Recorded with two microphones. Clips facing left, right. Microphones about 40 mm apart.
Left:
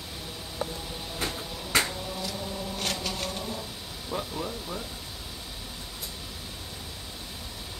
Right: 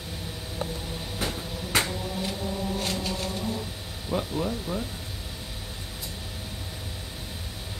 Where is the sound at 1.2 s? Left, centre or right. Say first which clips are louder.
Right 2 dB; right.